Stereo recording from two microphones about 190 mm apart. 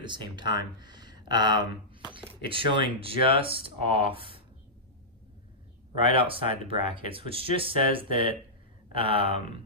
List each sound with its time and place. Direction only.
0.0 s speech: 25° right (ahead or behind)
6.0 s speech: 30° right (ahead or behind)